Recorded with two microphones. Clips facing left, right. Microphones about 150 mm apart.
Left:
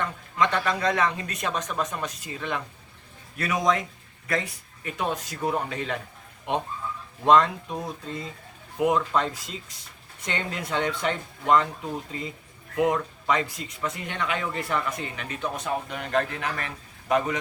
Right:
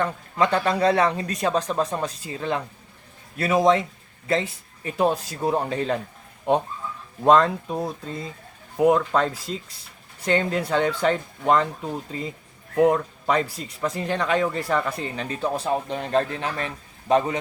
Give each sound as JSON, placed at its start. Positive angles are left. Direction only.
{"t": 0.0, "sound": "a man's voice", "side_deg": -35}
{"t": 7.3, "sound": "speech", "side_deg": -35}